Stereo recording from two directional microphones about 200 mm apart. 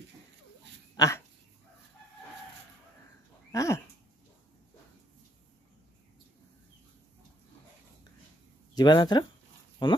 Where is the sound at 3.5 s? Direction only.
15° left (ahead or behind).